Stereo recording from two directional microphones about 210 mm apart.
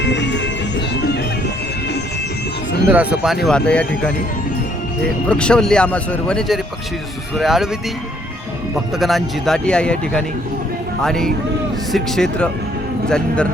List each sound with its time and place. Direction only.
0.0 s music: 55° left (ahead or behind)
2.9 s a man's voice: 5° right (ahead or behind)
3.4 s a man's voice: 5° left (ahead or behind)
5.3 s a man's voice: 5° left (ahead or behind)